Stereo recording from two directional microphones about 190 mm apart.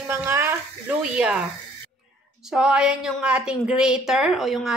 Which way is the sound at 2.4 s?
5° right (ahead or behind).